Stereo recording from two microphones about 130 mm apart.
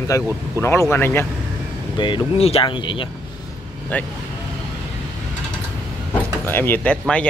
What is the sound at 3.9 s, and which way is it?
Speech, 10° left (ahead or behind).